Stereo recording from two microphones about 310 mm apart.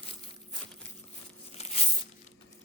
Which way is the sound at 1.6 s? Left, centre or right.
Centre.